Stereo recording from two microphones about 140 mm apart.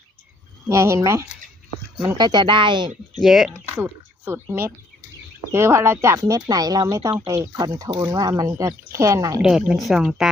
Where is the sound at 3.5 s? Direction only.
15° right (ahead or behind).